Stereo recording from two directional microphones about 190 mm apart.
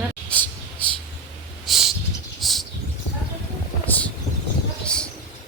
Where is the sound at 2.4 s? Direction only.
Centre (ahead or behind).